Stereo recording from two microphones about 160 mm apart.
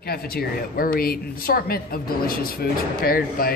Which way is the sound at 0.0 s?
70° left (ahead or behind).